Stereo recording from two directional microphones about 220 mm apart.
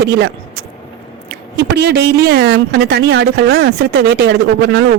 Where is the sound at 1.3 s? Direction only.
50° right (ahead or behind).